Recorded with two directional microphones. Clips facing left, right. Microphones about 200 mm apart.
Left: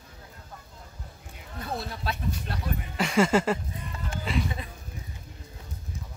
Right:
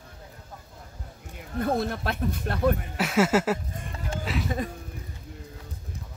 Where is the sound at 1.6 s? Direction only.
50° right (ahead or behind).